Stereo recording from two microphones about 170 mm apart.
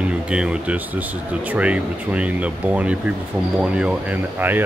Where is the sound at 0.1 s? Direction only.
5° right (ahead or behind).